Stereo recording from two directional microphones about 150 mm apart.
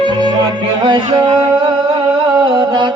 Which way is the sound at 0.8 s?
30° right (ahead or behind).